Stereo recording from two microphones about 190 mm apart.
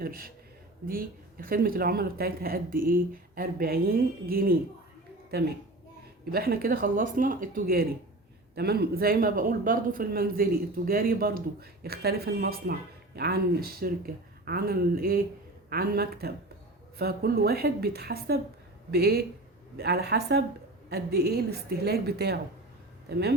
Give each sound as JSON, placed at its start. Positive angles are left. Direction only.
{"t": 0.0, "sound": "a man's voice", "side_deg": -50}